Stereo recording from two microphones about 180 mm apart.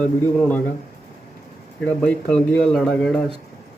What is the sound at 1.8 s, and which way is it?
Speech, 5° left (ahead or behind).